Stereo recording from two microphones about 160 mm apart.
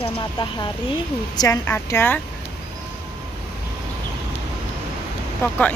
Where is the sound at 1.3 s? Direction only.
20° left (ahead or behind).